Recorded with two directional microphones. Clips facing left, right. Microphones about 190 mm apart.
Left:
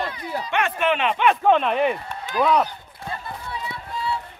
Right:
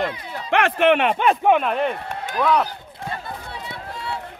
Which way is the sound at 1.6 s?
5° left (ahead or behind).